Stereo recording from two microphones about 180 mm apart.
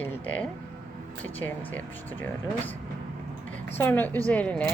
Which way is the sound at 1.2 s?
10° left (ahead or behind).